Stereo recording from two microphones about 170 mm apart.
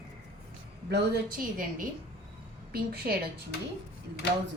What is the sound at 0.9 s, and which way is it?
A woman's voice, 75° right (ahead or behind).